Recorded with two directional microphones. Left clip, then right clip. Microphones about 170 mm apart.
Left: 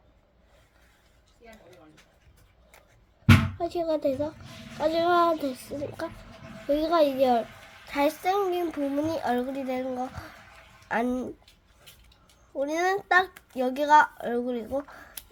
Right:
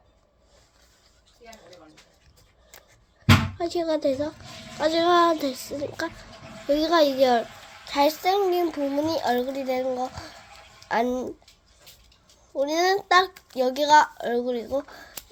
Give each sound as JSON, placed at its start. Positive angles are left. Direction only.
{"t": 3.6, "sound": "speech", "side_deg": -10}
{"t": 7.9, "sound": "a woman's voice", "side_deg": 15}
{"t": 10.9, "sound": "a woman's voice", "side_deg": 15}
{"t": 12.6, "sound": "a woman's voice", "side_deg": 15}